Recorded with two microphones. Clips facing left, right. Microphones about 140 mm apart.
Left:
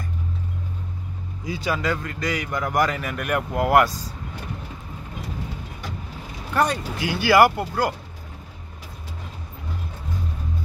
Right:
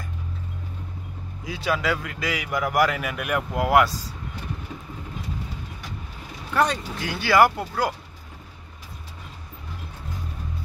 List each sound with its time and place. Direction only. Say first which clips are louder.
1.4 s speech: even; centre (ahead or behind)
6.5 s speech: left 1 dB; 5° left (ahead or behind)